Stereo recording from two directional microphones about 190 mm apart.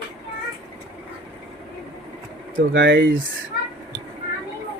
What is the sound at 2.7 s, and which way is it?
Speech, 75° right (ahead or behind).